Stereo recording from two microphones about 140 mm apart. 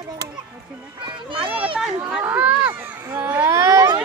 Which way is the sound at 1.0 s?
35° right (ahead or behind).